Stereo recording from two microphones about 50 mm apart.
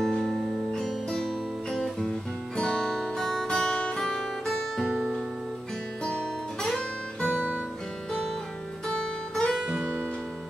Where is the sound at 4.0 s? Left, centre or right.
Centre.